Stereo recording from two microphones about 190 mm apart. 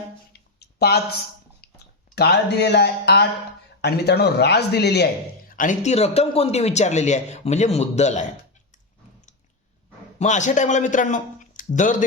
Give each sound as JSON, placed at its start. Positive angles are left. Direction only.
{"t": 0.6, "sound": "a sound", "side_deg": 60}
{"t": 2.1, "sound": "speech", "side_deg": 60}
{"t": 5.5, "sound": "a man's voice", "side_deg": 40}
{"t": 10.2, "sound": "speech", "side_deg": 40}